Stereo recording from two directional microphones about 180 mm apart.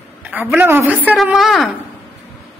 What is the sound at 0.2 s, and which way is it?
Speech, 10° right (ahead or behind).